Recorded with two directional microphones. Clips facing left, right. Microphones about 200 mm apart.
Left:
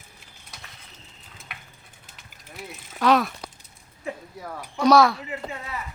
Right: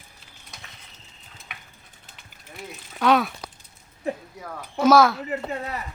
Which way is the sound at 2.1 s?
Centre (ahead or behind).